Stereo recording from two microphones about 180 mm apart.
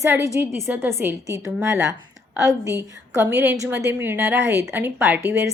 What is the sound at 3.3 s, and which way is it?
A woman's voice, 15° right (ahead or behind).